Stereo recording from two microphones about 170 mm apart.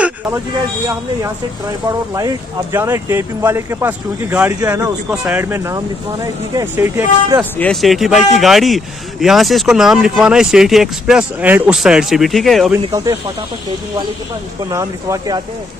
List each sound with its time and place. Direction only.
1.9 s speech: 20° right (ahead or behind)
5.1 s speech: 10° right (ahead or behind)
7.5 s speech: 5° left (ahead or behind)
14.7 s speech: 20° right (ahead or behind)